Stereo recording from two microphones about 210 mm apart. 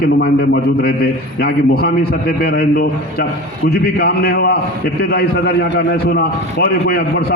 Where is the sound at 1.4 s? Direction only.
50° left (ahead or behind).